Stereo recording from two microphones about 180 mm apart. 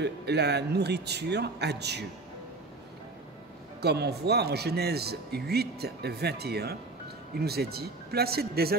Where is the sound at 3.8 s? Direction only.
65° right (ahead or behind).